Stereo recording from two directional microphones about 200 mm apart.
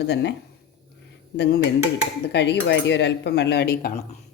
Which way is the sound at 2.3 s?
60° left (ahead or behind).